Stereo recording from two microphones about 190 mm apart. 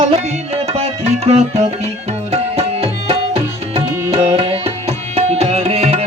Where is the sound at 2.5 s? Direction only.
30° right (ahead or behind).